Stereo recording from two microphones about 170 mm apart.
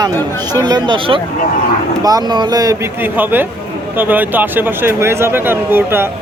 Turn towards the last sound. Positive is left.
turn(degrees=-15)  # may be behind; listen again after turning